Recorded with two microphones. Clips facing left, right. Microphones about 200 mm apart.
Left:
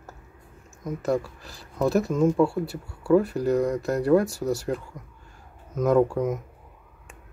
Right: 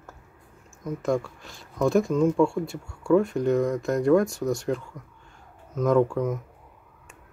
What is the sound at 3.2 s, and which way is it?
Speech, 35° left (ahead or behind).